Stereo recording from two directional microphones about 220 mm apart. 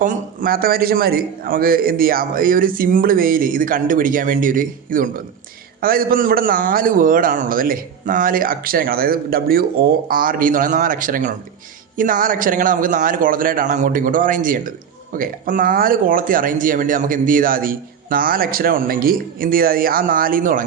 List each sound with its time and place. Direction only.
0.0 s speech: 35° right (ahead or behind)